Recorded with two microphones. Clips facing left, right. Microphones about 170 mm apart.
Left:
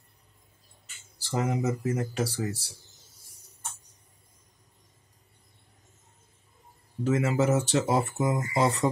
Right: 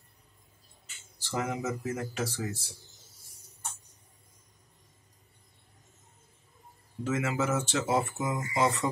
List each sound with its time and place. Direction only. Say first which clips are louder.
1.3 s speech: left 4 dB; 35° left (ahead or behind)
7.1 s speech: left 5 dB; 35° left (ahead or behind)